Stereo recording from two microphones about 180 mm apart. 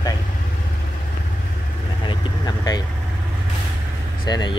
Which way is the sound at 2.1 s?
25° left (ahead or behind).